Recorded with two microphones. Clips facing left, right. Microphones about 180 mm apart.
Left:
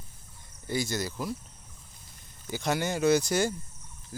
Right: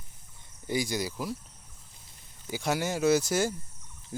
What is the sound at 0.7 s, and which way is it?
Speech, 15° right (ahead or behind).